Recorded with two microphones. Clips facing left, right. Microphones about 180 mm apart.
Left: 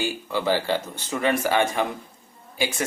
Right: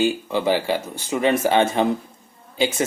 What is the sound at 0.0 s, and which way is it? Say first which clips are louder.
Speech: right 5 dB; 20° right (ahead or behind).